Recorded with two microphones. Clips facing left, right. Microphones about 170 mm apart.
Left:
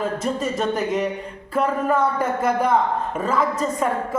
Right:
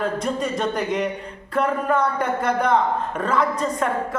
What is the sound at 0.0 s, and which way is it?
A woman's voice, 5° left (ahead or behind).